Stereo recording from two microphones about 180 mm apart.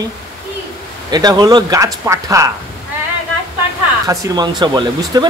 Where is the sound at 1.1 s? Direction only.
25° right (ahead or behind).